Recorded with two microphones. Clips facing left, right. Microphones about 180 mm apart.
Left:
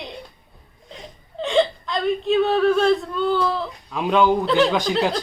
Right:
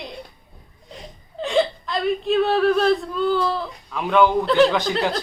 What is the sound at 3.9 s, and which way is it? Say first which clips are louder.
Speech: right 1 dB; 20° left (ahead or behind).